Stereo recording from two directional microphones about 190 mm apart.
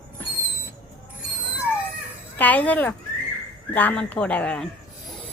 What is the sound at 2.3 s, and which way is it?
Speech, 10° left (ahead or behind).